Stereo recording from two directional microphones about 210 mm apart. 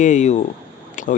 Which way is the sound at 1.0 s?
35° left (ahead or behind).